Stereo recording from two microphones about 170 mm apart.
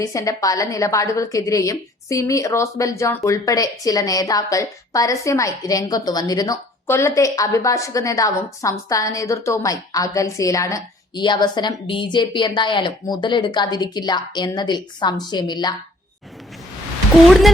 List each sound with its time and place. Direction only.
0.0 s a woman's voice: 20° left (ahead or behind)